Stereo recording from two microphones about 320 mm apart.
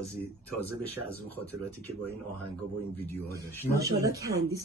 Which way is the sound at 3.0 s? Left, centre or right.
Centre.